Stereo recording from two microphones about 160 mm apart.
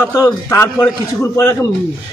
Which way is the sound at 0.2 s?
15° left (ahead or behind).